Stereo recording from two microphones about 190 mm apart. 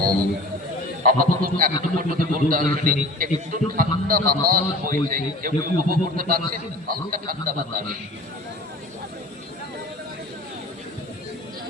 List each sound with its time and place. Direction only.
1.0 s a man's voice: 45° right (ahead or behind)